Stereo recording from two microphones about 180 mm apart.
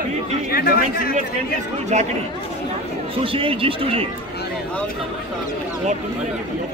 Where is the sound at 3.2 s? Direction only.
30° right (ahead or behind).